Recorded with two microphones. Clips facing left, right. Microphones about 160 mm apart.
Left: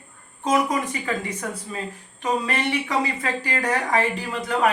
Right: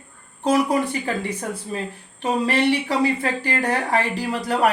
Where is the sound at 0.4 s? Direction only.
35° right (ahead or behind).